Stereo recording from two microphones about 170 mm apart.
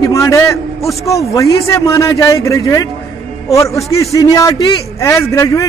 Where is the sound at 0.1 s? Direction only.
15° left (ahead or behind).